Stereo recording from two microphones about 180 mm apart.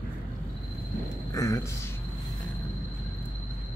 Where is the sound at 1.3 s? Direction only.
20° left (ahead or behind).